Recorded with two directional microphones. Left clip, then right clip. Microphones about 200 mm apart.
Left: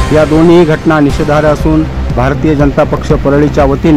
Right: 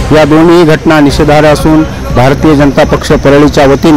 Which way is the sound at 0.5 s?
20° right (ahead or behind).